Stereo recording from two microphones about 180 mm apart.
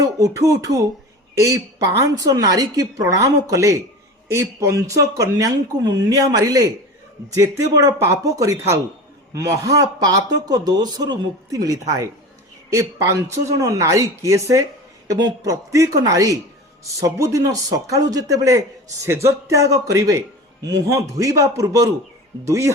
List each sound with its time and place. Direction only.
0.0 s speech: 15° right (ahead or behind)
6.1 s speech: 20° right (ahead or behind)